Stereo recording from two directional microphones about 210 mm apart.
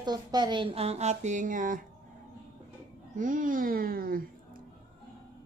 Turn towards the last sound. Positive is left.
turn(degrees=-45)  # may be behind; listen again after turning